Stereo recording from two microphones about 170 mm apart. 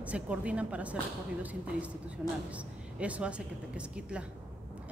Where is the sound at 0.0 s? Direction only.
5° right (ahead or behind).